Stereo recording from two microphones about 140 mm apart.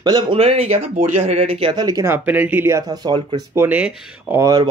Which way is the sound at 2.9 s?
30° right (ahead or behind).